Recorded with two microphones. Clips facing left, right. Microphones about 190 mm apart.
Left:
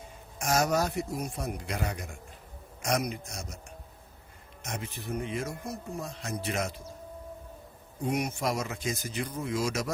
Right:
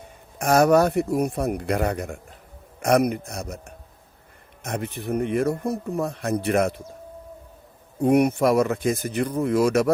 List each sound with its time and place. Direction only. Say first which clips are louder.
0.3 s speech: right 10 dB; 60° right (ahead or behind)
7.9 s speech: right 12 dB; 60° right (ahead or behind)